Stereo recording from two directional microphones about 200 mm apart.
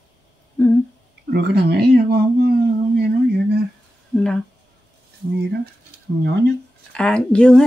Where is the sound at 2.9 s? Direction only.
50° right (ahead or behind).